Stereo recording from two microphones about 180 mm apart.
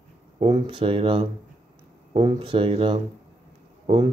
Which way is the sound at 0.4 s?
30° right (ahead or behind).